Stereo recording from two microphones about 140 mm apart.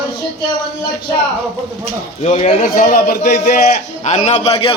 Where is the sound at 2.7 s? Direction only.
85° left.